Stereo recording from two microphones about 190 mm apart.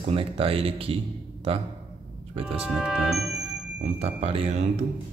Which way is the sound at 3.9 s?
35° right (ahead or behind).